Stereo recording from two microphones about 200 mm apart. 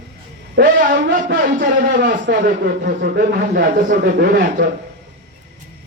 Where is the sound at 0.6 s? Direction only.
60° right (ahead or behind).